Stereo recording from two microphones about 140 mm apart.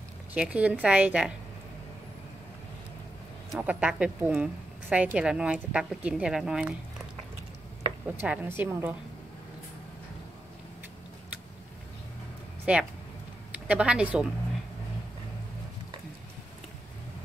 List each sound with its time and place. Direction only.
0.3 s a woman's voice: 10° right (ahead or behind)
3.5 s a woman's voice: 10° right (ahead or behind)
8.2 s a woman's voice: 15° right (ahead or behind)
12.7 s a woman's voice: 10° right (ahead or behind)